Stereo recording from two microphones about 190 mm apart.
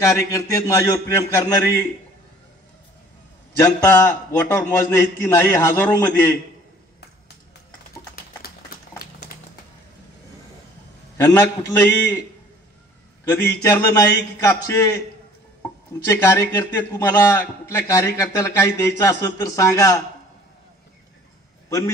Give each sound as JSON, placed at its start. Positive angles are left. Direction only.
{"t": 0.0, "sound": "a man's voice", "side_deg": 15}
{"t": 3.5, "sound": "a man's voice", "side_deg": 15}
{"t": 8.9, "sound": "a sound", "side_deg": 50}
{"t": 11.1, "sound": "a man's voice", "side_deg": 15}
{"t": 15.6, "sound": "a man's voice", "side_deg": 15}
{"t": 21.6, "sound": "a man's voice", "side_deg": 15}